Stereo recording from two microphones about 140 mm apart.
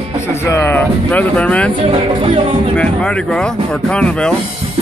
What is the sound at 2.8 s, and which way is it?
Speech, 5° left (ahead or behind).